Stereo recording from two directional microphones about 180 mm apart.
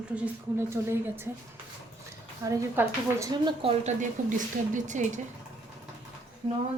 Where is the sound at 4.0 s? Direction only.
45° right (ahead or behind).